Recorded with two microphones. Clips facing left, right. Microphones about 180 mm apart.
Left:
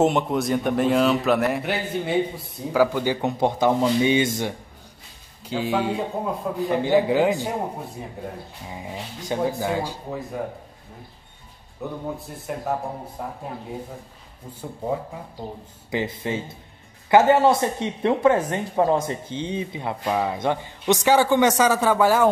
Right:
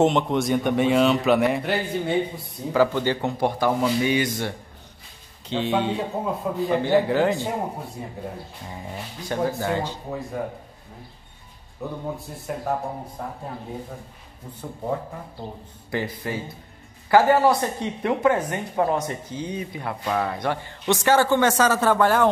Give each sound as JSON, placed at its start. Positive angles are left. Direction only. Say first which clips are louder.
{"t": 0.0, "sound": "speech", "louder": "even", "side_deg": 5}
{"t": 5.5, "sound": "speech", "louder": "even", "side_deg": 5}
{"t": 6.7, "sound": "a man's voice", "louder": "left 1 dB", "side_deg": 15}
{"t": 8.6, "sound": "a man's voice", "louder": "left 2 dB", "side_deg": 10}
{"t": 11.8, "sound": "a man's voice", "louder": "even", "side_deg": 0}
{"t": 15.9, "sound": "speech", "louder": "left 2 dB", "side_deg": 20}